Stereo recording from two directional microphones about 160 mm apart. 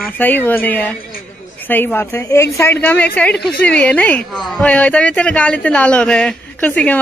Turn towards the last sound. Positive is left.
turn(degrees=10)  # may be behind; listen again after turning